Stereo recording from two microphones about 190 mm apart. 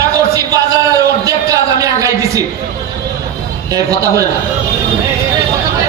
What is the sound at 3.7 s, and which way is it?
Speech, 15° right (ahead or behind).